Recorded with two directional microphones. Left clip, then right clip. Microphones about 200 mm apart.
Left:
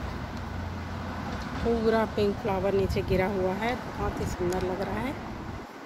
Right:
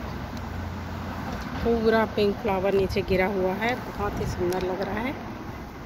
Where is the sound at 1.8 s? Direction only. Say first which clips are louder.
Right 3 dB; 5° left (ahead or behind).